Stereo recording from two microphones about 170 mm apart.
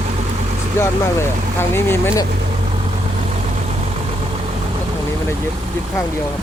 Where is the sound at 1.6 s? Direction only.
15° left (ahead or behind).